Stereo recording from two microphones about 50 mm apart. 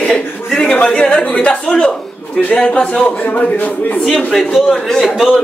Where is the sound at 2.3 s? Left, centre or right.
Left.